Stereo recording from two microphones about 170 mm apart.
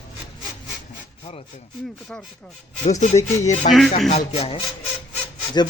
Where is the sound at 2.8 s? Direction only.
40° left (ahead or behind).